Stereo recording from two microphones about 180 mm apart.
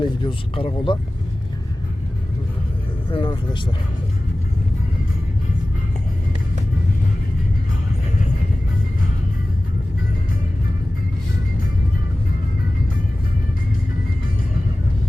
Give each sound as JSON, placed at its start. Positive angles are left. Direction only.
{"t": 0.0, "sound": "speech", "side_deg": 30}
{"t": 3.1, "sound": "speech", "side_deg": 30}